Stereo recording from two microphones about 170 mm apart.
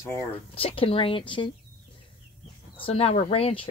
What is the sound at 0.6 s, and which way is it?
Speech, 35° left (ahead or behind).